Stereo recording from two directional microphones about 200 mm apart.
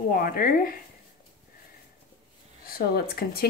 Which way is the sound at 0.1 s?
45° left (ahead or behind).